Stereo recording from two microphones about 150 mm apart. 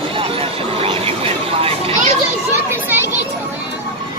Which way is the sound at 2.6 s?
15° right (ahead or behind).